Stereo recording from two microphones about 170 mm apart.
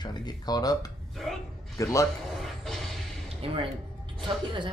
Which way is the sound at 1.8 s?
20° left (ahead or behind).